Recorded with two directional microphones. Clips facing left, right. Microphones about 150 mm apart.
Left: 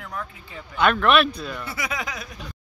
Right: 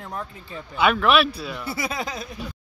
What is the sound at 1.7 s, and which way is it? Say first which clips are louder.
Speech: right 2 dB; 30° right (ahead or behind).